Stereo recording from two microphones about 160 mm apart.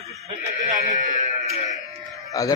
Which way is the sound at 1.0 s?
50° left (ahead or behind).